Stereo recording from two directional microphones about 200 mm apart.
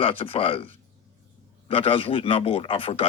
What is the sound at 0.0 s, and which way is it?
Speech, 30° left (ahead or behind).